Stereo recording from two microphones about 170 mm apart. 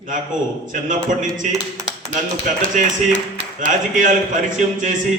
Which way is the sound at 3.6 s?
50° right (ahead or behind).